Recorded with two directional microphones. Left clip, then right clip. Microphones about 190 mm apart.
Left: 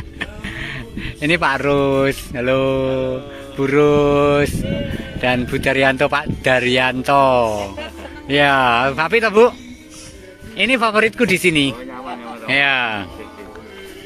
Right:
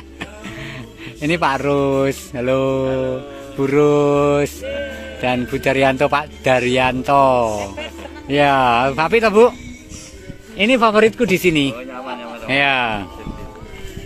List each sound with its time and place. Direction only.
0.2 s speech: 5° right (ahead or behind)
3.5 s mantra: 10° right (ahead or behind)
5.2 s speech: 5° right (ahead or behind)
10.6 s speech: 5° left (ahead or behind)
11.9 s a sound: 45° left (ahead or behind)
12.4 s mantra: 10° right (ahead or behind)